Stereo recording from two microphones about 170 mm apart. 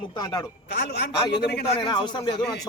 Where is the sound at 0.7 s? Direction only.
90° left.